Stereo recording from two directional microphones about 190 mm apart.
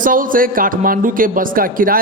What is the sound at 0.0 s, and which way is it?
A man's voice, 45° right (ahead or behind).